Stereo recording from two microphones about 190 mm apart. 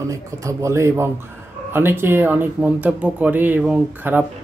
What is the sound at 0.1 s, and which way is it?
Speech, 15° right (ahead or behind).